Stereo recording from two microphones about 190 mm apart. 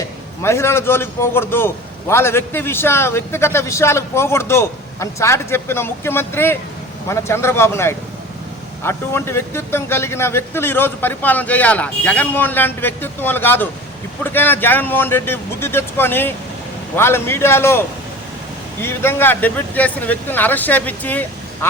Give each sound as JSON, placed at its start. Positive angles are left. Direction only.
{"t": 0.4, "sound": "a man's voice", "side_deg": 15}